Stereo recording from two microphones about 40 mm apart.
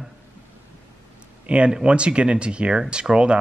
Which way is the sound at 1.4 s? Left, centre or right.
Right.